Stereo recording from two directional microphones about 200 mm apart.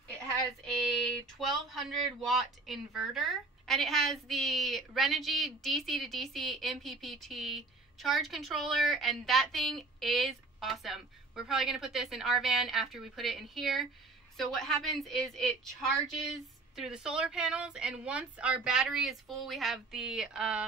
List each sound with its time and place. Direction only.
0.7 s speech: centre (ahead or behind)